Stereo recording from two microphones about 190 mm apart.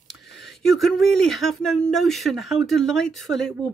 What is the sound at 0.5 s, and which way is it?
Speech, centre (ahead or behind).